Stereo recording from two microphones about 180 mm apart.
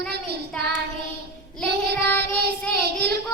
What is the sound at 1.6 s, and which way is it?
Child singing, 65° right (ahead or behind).